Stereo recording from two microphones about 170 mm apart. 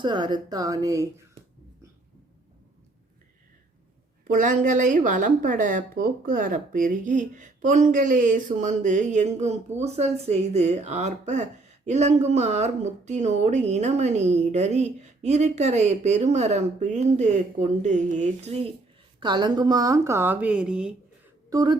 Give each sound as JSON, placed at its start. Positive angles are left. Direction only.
{"t": 0.0, "sound": "speech", "side_deg": -25}
{"t": 4.3, "sound": "speech", "side_deg": -50}
{"t": 19.2, "sound": "speech", "side_deg": -25}
{"t": 21.5, "sound": "speech", "side_deg": -25}